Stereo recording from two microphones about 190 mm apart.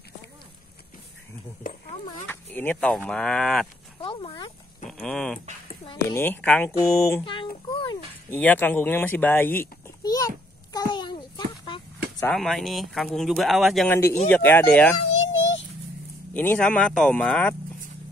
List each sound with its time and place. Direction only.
1.6 s speech: 45° left (ahead or behind)
2.2 s speech: 10° left (ahead or behind)
4.0 s speech: 30° left (ahead or behind)
4.8 s speech: 5° left (ahead or behind)
7.2 s a sound: 25° left (ahead or behind)
8.3 s a sound: 10° left (ahead or behind)
12.3 s speech: centre (ahead or behind)
13.8 s speech: 10° left (ahead or behind)
15.0 s a sound: 85° left
16.3 s speech: 5° left (ahead or behind)